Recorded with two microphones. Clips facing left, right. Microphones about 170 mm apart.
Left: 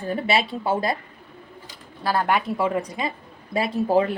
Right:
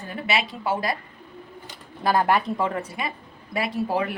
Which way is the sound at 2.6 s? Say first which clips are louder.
Left 3 dB; 15° left (ahead or behind).